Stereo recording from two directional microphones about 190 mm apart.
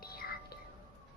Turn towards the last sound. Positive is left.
turn(degrees=55)  # may be behind; listen again after turning